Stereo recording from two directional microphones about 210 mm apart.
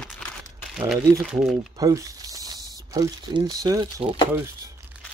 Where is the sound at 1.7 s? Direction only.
15° right (ahead or behind).